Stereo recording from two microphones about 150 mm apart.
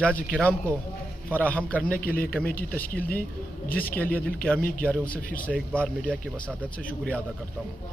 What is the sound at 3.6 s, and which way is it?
Speech, 75° left (ahead or behind).